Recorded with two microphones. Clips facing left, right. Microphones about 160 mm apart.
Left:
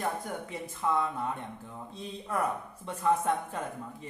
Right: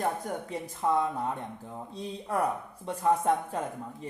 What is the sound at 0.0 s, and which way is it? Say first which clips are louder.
Speech: right 3 dB; 40° right (ahead or behind).